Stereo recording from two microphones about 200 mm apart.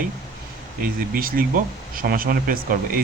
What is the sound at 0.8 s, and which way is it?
Speech, 45° right (ahead or behind).